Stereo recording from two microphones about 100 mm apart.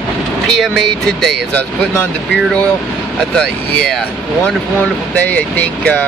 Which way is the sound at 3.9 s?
10° left (ahead or behind).